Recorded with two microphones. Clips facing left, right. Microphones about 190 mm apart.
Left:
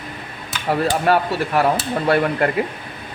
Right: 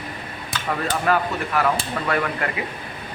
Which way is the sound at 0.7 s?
30° left (ahead or behind).